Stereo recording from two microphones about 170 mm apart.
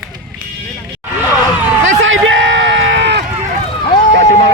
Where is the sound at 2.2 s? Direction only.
90° right.